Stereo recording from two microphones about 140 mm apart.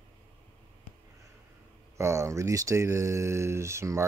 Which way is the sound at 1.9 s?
20° right (ahead or behind).